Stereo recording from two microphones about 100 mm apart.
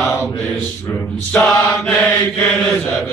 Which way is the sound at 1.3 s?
10° left (ahead or behind).